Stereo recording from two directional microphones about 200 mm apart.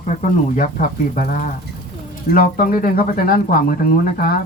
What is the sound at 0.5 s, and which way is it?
Speech, 40° left (ahead or behind).